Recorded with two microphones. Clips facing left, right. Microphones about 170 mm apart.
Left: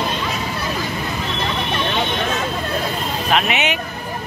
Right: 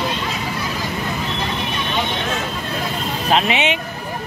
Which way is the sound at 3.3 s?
30° right (ahead or behind).